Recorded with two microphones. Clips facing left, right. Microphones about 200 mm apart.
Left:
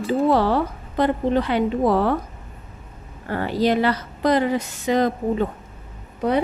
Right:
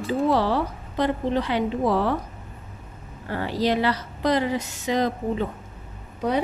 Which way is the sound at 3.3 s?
55° left (ahead or behind).